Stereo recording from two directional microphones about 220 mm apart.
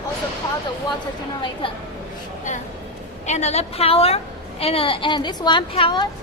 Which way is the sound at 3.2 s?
30° left (ahead or behind).